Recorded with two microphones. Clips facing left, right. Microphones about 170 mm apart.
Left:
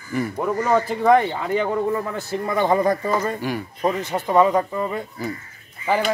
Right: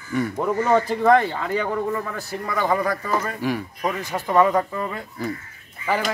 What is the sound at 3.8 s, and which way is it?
Speech, 25° left (ahead or behind).